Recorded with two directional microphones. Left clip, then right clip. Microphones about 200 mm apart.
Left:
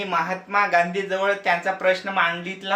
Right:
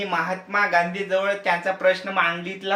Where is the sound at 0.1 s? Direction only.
10° left (ahead or behind).